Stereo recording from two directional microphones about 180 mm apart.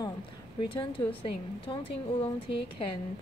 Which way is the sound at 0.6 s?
30° left (ahead or behind).